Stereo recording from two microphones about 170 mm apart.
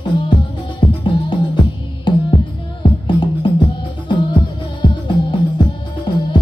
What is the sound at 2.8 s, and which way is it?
Music, 25° left (ahead or behind).